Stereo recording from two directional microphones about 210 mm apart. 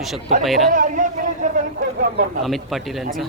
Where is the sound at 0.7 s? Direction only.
40° right (ahead or behind).